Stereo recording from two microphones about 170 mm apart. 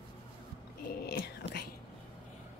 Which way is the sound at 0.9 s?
65° left (ahead or behind).